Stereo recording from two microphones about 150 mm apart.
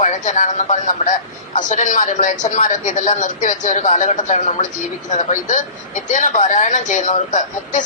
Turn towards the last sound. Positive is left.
turn(degrees=55)  # may be behind; listen again after turning